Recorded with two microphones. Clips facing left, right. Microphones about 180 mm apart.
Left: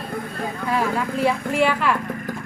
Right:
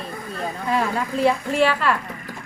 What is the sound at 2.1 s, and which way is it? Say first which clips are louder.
Horse: left 7 dB; 50° left (ahead or behind).